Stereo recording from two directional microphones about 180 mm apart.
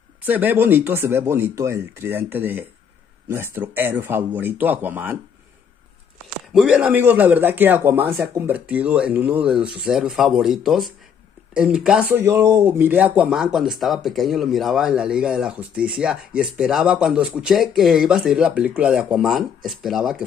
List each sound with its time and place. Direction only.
0.2 s a man's voice: 10° right (ahead or behind)
6.5 s a man's voice: 5° right (ahead or behind)